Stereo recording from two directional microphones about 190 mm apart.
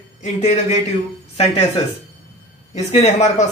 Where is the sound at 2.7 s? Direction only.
35° left (ahead or behind).